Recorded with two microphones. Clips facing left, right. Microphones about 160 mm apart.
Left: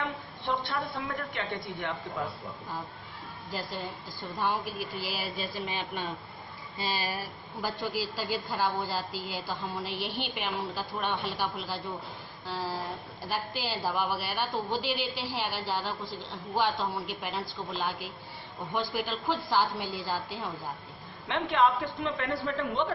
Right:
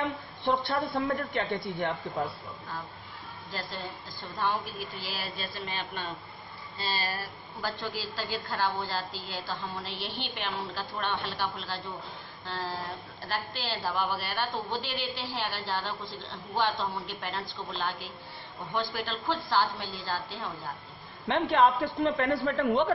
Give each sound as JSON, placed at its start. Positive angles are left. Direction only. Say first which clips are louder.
{"t": 0.5, "sound": "a woman's voice", "louder": "right 4 dB", "side_deg": -40}
{"t": 4.4, "sound": "a woman's voice", "louder": "even", "side_deg": 10}
{"t": 21.3, "sound": "a man's voice", "louder": "right 2 dB", "side_deg": -40}